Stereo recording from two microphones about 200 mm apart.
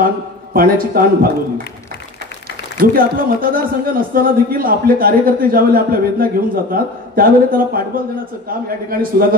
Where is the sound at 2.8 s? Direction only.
45° right (ahead or behind).